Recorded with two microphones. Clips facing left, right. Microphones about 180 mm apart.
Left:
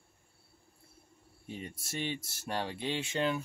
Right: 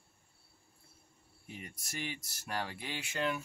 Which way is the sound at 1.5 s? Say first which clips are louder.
Left 5 dB; 25° left (ahead or behind).